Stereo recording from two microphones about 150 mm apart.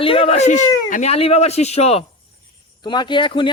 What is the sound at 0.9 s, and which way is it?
Speech, 60° left (ahead or behind).